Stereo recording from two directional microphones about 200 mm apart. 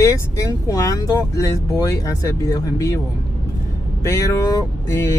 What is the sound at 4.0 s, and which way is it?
Speech, 15° left (ahead or behind).